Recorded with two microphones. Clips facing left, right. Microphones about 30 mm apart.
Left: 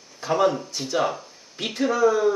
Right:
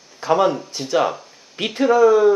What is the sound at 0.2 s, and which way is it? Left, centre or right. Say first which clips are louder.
Speech: right 4 dB; centre.